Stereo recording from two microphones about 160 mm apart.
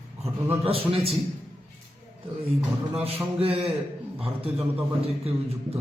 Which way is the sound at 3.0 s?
35° right (ahead or behind).